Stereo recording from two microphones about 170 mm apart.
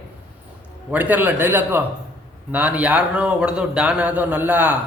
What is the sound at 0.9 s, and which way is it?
A man's voice, 10° right (ahead or behind).